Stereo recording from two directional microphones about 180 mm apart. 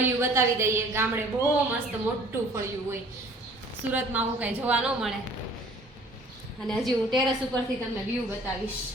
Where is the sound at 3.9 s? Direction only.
10° right (ahead or behind).